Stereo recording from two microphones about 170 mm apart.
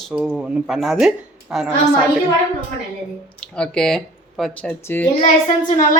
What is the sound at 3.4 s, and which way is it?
Speech, 5° left (ahead or behind).